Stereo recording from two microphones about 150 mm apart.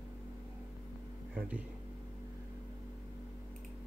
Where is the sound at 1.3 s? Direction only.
10° right (ahead or behind).